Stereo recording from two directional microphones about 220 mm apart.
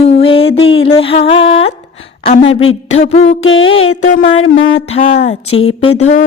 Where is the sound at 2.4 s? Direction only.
60° left (ahead or behind).